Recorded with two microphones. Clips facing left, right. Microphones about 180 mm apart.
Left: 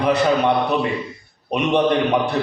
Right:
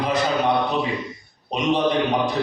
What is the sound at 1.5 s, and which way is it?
Speech, 65° left (ahead or behind).